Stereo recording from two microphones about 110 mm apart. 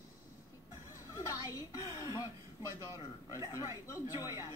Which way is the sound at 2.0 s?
35° left (ahead or behind).